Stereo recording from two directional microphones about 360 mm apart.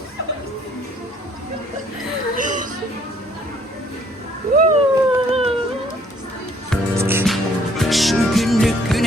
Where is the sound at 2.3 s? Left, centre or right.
Right.